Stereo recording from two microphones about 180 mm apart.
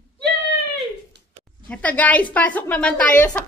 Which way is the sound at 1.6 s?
10° left (ahead or behind).